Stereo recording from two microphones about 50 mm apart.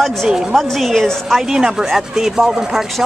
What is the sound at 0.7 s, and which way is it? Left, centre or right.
Speech, centre.